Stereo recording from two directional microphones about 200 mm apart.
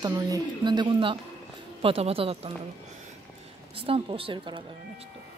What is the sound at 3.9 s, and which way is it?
Speech, 25° right (ahead or behind).